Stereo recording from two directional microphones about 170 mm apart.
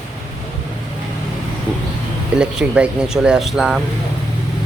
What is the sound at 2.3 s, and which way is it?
Speech, 5° right (ahead or behind).